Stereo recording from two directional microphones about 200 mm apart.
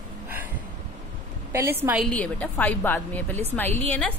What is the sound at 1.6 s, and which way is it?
Speech, 10° right (ahead or behind).